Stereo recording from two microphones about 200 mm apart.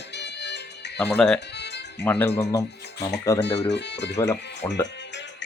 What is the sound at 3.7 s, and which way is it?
Speech, 60° left (ahead or behind).